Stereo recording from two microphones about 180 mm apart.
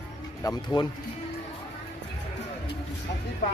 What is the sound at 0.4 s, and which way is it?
Speech, 20° left (ahead or behind).